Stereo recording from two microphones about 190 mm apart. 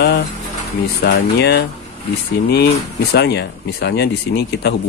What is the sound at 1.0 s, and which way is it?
Speech, 60° left (ahead or behind).